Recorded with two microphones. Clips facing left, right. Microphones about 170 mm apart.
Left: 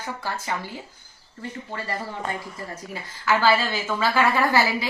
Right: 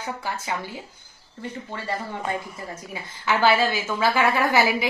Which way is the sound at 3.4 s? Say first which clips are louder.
Right 3 dB; 15° right (ahead or behind).